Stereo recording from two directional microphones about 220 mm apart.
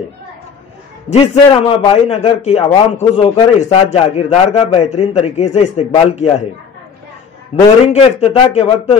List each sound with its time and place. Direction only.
1.1 s a man's voice: 25° left (ahead or behind)
7.5 s a man's voice: 25° left (ahead or behind)